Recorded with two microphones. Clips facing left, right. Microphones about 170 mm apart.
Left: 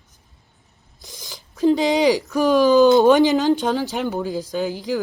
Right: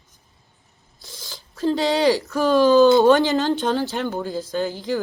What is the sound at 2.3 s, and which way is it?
Speech, 15° left (ahead or behind).